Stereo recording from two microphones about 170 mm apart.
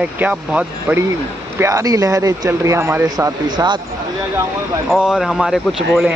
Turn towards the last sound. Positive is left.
turn(degrees=0)  # may be behind; listen again after turning